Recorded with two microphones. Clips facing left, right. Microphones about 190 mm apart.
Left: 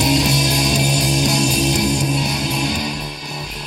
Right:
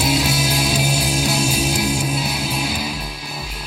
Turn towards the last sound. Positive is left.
turn(degrees=-5)  # may be behind; listen again after turning